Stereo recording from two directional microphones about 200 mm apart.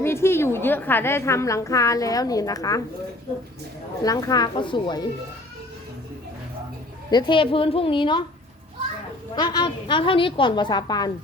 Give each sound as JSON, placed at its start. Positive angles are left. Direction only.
{"t": 0.0, "sound": "a woman's voice", "side_deg": 10}
{"t": 4.0, "sound": "a woman's voice", "side_deg": 20}
{"t": 7.1, "sound": "a woman's voice", "side_deg": 25}
{"t": 9.3, "sound": "a woman's voice", "side_deg": 20}